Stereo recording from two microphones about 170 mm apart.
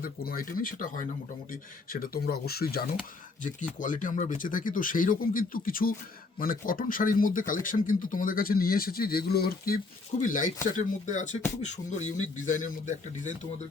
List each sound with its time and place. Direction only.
0.0 s speech: 60° left (ahead or behind)
3.4 s speech: 50° left (ahead or behind)